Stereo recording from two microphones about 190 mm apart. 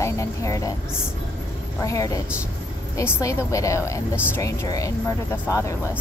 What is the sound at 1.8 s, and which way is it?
A woman's voice, 15° left (ahead or behind).